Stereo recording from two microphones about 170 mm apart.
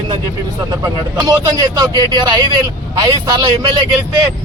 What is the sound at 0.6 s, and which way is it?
Speech, 20° right (ahead or behind).